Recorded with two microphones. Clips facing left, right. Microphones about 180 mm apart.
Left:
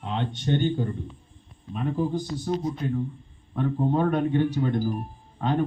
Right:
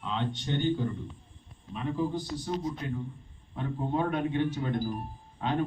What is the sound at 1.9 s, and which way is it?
A man's voice, 45° left (ahead or behind).